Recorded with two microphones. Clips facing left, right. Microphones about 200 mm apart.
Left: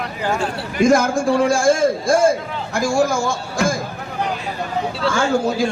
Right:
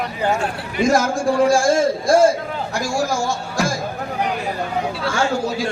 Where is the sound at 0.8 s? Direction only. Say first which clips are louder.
Left 3 dB; 50° left (ahead or behind).